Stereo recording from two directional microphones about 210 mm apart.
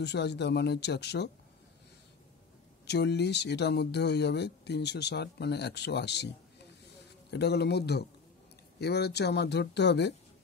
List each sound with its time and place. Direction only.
0.0 s speech: 55° left (ahead or behind)
2.9 s speech: 55° left (ahead or behind)